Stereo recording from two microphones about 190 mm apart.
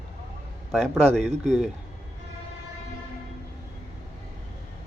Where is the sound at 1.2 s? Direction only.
35° right (ahead or behind).